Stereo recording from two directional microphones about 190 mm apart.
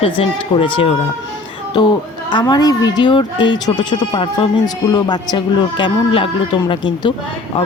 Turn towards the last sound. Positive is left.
turn(degrees=25)  # may be behind; listen again after turning